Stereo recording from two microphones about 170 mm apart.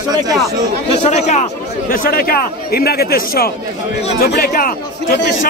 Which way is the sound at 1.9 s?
55° left (ahead or behind).